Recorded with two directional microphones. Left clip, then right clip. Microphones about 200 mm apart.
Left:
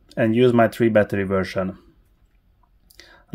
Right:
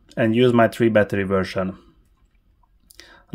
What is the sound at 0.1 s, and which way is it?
Speech, centre (ahead or behind).